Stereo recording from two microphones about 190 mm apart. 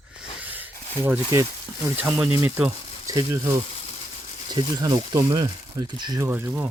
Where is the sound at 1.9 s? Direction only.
10° right (ahead or behind).